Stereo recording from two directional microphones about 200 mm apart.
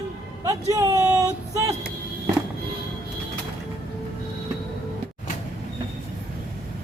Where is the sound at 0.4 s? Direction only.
15° right (ahead or behind).